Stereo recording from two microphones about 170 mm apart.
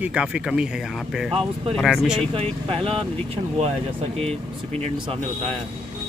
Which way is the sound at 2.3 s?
30° right (ahead or behind).